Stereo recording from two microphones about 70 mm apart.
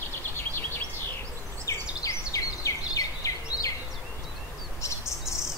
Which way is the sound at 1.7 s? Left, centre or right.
Left.